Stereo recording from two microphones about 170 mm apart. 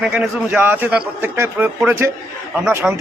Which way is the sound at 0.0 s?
5° right (ahead or behind).